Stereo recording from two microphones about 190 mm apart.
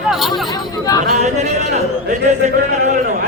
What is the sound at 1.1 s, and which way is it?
Speech, 40° right (ahead or behind).